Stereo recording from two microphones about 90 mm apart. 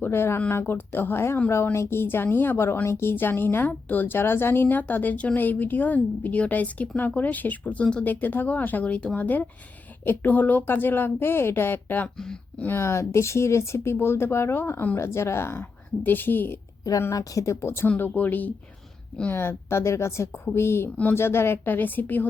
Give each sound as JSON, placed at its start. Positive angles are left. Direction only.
{"t": 0.0, "sound": "a woman's voice", "side_deg": 25}
{"t": 17.0, "sound": "speech", "side_deg": 35}
{"t": 17.8, "sound": "a woman's voice", "side_deg": 20}